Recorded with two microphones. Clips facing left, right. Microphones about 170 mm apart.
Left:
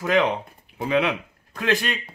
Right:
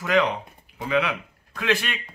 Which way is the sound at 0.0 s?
25° left (ahead or behind).